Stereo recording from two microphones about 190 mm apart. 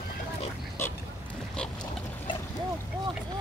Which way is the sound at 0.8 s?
15° left (ahead or behind).